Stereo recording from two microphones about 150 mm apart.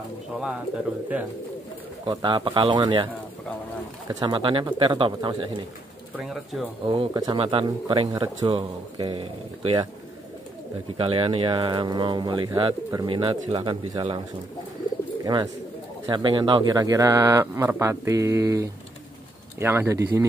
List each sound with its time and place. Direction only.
2.0 s a man's voice: 35° right (ahead or behind)
4.1 s a man's voice: 30° right (ahead or behind)
6.2 s speech: centre (ahead or behind)
6.9 s a man's voice: 30° right (ahead or behind)
11.0 s a man's voice: 40° right (ahead or behind)
15.2 s speech: 25° right (ahead or behind)